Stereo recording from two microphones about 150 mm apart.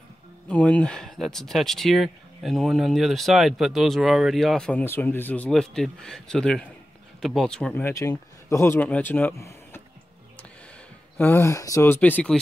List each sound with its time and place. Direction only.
0.5 s speech: 10° left (ahead or behind)
7.8 s speech: 20° left (ahead or behind)
11.1 s speech: 15° left (ahead or behind)